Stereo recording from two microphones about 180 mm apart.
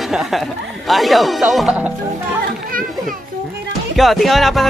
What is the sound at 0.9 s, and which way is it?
Speech, centre (ahead or behind).